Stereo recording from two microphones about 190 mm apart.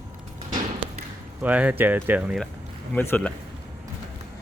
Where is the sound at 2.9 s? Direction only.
10° left (ahead or behind).